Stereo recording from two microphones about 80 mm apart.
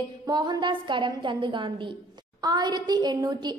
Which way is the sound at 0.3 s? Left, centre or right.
Right.